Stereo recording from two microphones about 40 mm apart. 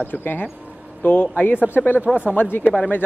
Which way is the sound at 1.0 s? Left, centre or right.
Left.